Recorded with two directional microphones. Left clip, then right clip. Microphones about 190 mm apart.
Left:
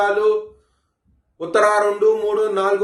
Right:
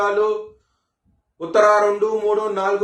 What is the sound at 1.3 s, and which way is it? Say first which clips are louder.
Speech: right 1 dB; 35° left (ahead or behind).